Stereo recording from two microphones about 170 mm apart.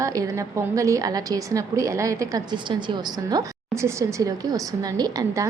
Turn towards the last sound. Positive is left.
turn(degrees=-20)  # may be behind; listen again after turning